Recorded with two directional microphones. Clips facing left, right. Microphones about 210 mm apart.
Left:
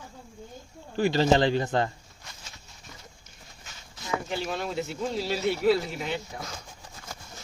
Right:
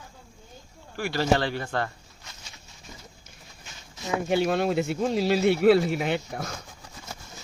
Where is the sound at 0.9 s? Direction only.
20° left (ahead or behind).